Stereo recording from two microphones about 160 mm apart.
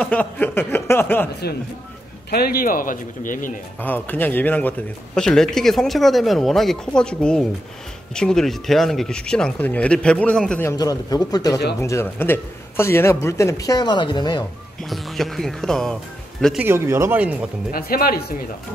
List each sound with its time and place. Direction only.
0.0 s a sound: 10° left (ahead or behind)
2.3 s speech: 70° left (ahead or behind)
3.8 s a man's voice: 10° left (ahead or behind)
10.7 s a man's voice: 20° left (ahead or behind)
14.8 s a man's voice: centre (ahead or behind)
16.6 s speech: 15° right (ahead or behind)
17.6 s speech: 65° left (ahead or behind)